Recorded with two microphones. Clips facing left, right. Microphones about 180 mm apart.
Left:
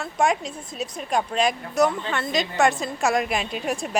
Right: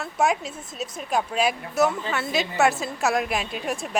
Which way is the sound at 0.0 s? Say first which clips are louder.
Left 1 dB; 5° right (ahead or behind).